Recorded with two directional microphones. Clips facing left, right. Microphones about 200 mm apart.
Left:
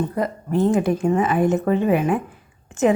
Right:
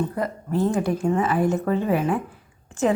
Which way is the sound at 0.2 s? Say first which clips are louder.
Left 6 dB; 20° left (ahead or behind).